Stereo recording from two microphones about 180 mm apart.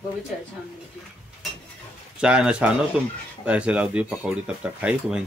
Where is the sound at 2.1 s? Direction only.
5° right (ahead or behind).